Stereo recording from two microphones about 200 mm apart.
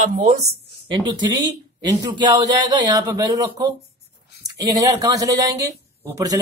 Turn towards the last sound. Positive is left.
turn(degrees=-15)  # may be behind; listen again after turning